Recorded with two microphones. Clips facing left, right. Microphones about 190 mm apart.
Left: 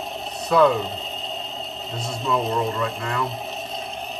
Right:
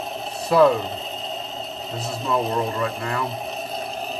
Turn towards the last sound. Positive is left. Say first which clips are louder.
# right 3 dB
turn(degrees=0)  # may be behind; listen again after turning